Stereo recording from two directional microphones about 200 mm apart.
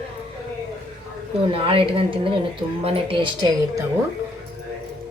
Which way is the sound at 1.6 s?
25° right (ahead or behind).